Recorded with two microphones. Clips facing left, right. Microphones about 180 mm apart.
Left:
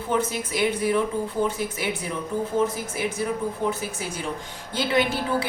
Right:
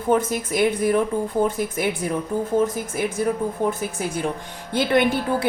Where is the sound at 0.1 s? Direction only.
50° right (ahead or behind).